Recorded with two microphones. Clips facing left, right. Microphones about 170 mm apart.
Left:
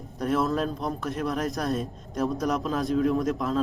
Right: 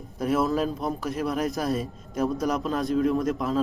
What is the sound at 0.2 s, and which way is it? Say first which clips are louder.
A man's voice: right 1 dB; 5° right (ahead or behind).